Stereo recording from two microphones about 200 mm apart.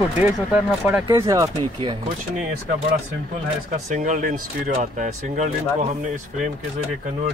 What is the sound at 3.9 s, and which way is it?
Speech, 40° right (ahead or behind).